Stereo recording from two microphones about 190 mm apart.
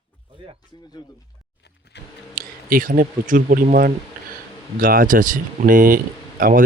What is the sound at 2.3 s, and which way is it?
Speech, 45° right (ahead or behind).